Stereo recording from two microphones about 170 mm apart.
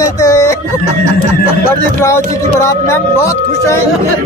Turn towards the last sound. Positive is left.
turn(degrees=15)  # may be behind; listen again after turning